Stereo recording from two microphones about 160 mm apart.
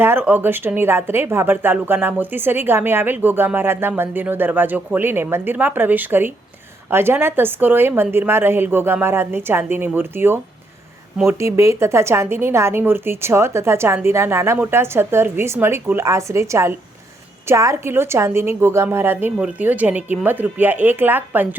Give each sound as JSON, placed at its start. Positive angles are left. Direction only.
{"t": 0.0, "sound": "speech", "side_deg": -15}